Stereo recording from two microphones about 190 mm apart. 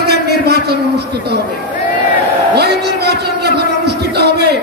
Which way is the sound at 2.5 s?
60° right (ahead or behind).